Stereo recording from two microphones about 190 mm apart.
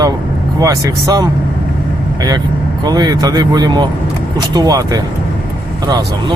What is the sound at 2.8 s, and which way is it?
Speech, 20° right (ahead or behind).